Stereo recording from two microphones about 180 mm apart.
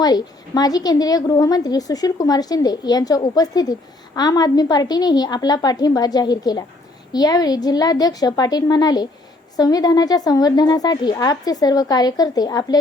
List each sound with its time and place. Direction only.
0.0 s a woman's voice: 20° left (ahead or behind)